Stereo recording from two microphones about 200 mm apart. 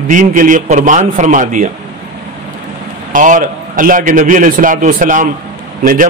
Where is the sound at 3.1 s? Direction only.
40° right (ahead or behind).